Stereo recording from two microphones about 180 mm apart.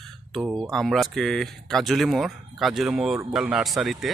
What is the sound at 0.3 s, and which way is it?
Speech, centre (ahead or behind).